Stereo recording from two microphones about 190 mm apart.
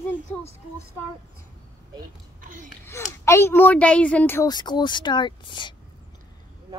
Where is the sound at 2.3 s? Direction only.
45° right (ahead or behind).